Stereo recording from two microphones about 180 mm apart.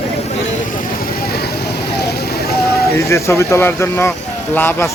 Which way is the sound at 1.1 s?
55° left (ahead or behind).